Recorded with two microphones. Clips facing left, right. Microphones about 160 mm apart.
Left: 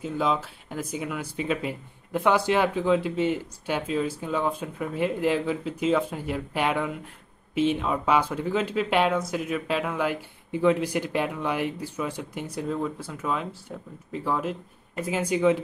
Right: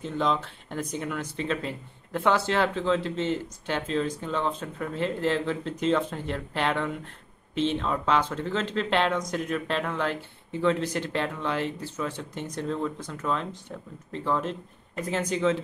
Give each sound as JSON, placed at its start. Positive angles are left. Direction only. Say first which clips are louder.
{"t": 0.0, "sound": "speech", "louder": "left 1 dB", "side_deg": 5}